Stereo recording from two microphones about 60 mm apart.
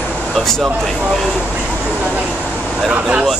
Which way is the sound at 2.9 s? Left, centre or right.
Centre.